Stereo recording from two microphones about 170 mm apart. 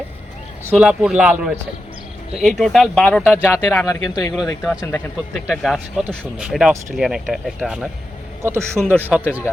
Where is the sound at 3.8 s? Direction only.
20° left (ahead or behind).